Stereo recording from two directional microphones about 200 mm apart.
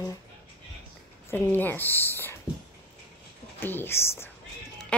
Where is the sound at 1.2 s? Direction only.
10° left (ahead or behind).